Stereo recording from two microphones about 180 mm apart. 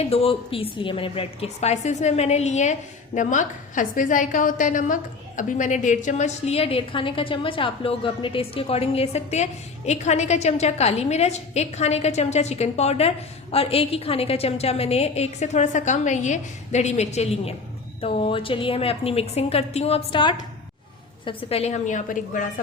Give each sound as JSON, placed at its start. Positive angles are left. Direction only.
{"t": 0.0, "sound": "a woman's voice", "side_deg": 35}